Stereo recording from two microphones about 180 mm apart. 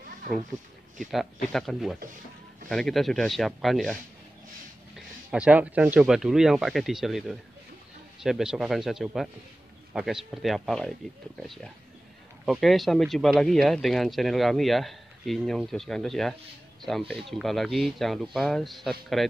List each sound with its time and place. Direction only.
0.9 s speech: centre (ahead or behind)